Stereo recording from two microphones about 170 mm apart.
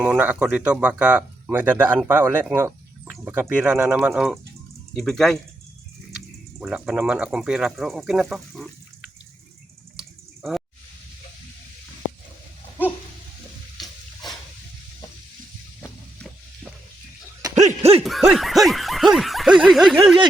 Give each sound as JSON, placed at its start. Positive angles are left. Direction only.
{"t": 0.0, "sound": "speech", "side_deg": -10}
{"t": 6.6, "sound": "speech", "side_deg": -5}
{"t": 17.7, "sound": "a sound", "side_deg": -35}
{"t": 18.0, "sound": "snicker", "side_deg": 0}